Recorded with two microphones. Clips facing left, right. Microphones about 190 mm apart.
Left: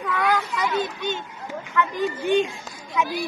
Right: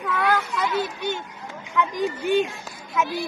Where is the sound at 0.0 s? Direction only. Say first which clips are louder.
Even; 5° right (ahead or behind).